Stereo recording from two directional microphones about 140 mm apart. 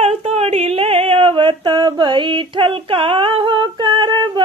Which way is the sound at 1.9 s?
35° right (ahead or behind).